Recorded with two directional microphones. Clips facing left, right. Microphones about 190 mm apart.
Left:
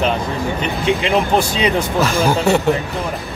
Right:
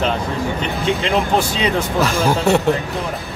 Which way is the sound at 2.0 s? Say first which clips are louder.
Left 1 dB; centre (ahead or behind).